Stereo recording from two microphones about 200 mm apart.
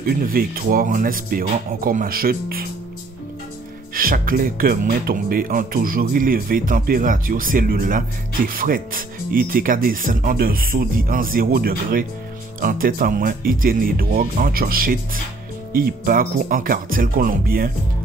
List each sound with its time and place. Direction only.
0.0 s speech: 45° right (ahead or behind)
3.9 s speech: 45° right (ahead or behind)